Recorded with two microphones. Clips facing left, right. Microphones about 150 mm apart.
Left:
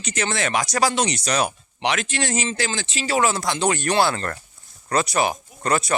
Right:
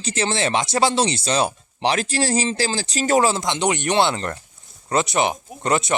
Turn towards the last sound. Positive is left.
turn(degrees=-20)  # may be behind; listen again after turning